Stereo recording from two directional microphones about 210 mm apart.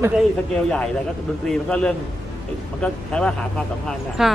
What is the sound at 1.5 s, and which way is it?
A man's voice, 5° left (ahead or behind).